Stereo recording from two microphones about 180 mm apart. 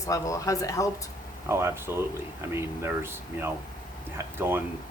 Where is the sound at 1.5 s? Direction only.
15° right (ahead or behind).